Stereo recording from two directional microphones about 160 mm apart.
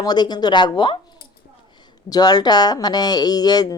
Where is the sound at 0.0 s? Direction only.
25° left (ahead or behind).